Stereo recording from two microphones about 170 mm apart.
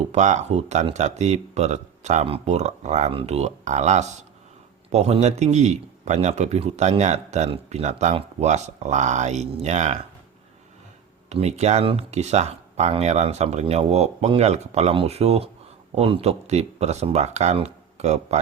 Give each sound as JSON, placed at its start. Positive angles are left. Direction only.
{"t": 0.1, "sound": "a man's voice", "side_deg": -45}
{"t": 11.3, "sound": "speech", "side_deg": -40}